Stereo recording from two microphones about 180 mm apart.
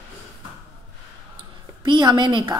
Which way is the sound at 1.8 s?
25° right (ahead or behind).